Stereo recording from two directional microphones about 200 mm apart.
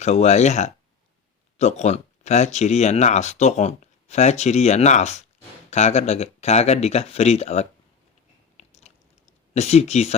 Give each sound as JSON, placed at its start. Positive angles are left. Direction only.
{"t": 0.0, "sound": "speech", "side_deg": 35}
{"t": 8.5, "sound": "biting", "side_deg": 35}
{"t": 9.6, "sound": "speech", "side_deg": 35}